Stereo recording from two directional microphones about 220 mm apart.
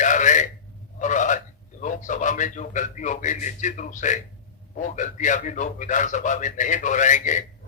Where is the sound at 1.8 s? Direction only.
35° left (ahead or behind).